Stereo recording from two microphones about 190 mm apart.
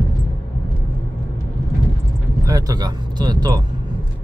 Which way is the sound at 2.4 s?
20° right (ahead or behind).